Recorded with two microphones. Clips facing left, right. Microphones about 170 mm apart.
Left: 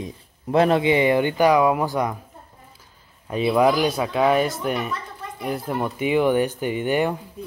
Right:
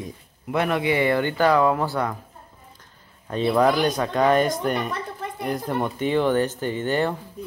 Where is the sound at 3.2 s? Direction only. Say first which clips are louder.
Left 1 dB; 10° left (ahead or behind).